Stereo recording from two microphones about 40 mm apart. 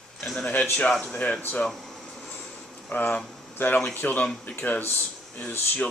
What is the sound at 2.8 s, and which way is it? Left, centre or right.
Speech, left.